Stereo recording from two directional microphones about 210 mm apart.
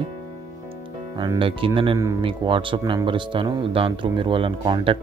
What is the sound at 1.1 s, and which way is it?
Speech, 20° right (ahead or behind).